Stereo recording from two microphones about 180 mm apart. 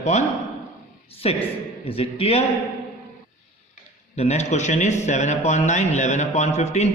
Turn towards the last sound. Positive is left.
turn(degrees=40)  # may be behind; listen again after turning